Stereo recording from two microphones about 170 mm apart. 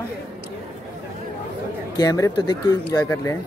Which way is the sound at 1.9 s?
20° left (ahead or behind).